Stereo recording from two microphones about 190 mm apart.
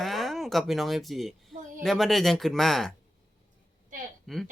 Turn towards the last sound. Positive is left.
turn(degrees=0)  # may be behind; listen again after turning